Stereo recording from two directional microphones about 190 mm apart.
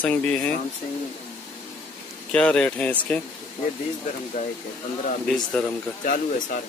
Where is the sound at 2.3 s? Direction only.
5° left (ahead or behind).